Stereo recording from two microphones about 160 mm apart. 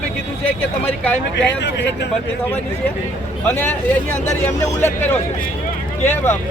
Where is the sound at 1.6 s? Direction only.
90° left.